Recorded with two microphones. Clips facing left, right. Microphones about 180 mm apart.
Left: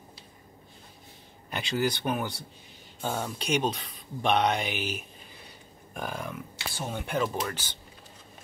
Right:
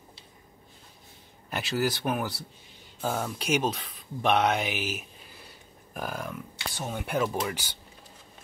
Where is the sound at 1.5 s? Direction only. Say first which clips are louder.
Even; 5° right (ahead or behind).